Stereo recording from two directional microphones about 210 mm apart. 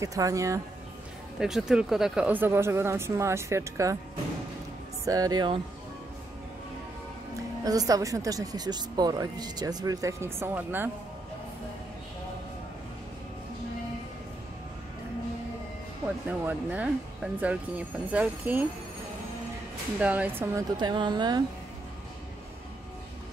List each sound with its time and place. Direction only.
0.0 s speech: 15° right (ahead or behind)
1.4 s speech: 5° right (ahead or behind)
5.0 s speech: 15° right (ahead or behind)
7.6 s speech: 15° right (ahead or behind)
16.3 s speech: 5° right (ahead or behind)
20.0 s speech: 5° right (ahead or behind)